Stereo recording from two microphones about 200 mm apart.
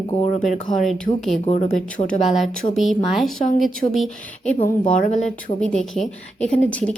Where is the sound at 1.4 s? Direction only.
35° left (ahead or behind).